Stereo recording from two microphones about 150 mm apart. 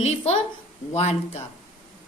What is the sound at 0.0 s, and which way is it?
Speech, 45° left (ahead or behind).